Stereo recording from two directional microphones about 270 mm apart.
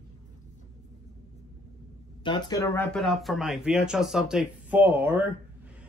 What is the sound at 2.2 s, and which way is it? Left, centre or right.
Speech, centre.